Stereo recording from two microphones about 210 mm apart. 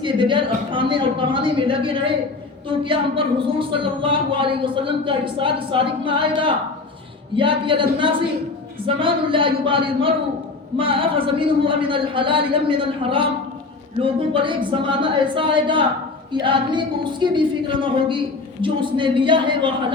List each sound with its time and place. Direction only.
0.0 s a woman's voice: 25° right (ahead or behind)